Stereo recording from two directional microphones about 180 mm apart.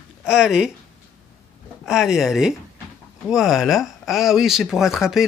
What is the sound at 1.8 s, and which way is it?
Speech, 5° right (ahead or behind).